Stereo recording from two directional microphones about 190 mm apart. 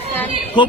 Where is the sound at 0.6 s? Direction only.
25° left (ahead or behind).